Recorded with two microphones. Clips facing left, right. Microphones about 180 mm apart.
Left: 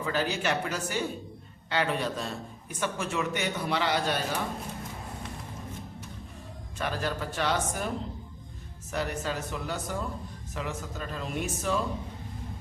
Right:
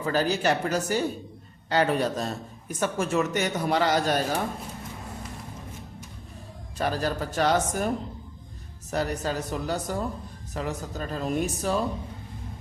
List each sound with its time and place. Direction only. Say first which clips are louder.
0.0 s a man's voice: right 5 dB; 40° right (ahead or behind)
6.7 s speech: right 4 dB; 40° right (ahead or behind)